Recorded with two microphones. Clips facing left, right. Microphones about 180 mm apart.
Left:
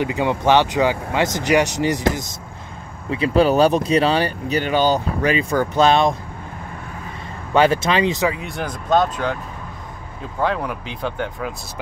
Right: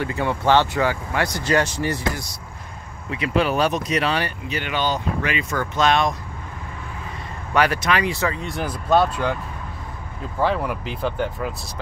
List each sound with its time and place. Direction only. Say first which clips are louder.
0.0 s speech: left 3 dB; 15° left (ahead or behind)
3.1 s speech: left 5 dB; 35° left (ahead or behind)
7.5 s speech: left 4 dB; 25° left (ahead or behind)
8.4 s speech: even; centre (ahead or behind)
10.4 s speech: even; 5° right (ahead or behind)